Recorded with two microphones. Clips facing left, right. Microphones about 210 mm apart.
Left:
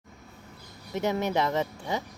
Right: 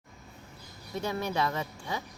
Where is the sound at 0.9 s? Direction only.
20° left (ahead or behind).